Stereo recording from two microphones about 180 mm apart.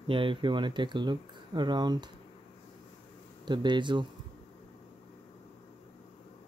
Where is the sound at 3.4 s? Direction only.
25° right (ahead or behind).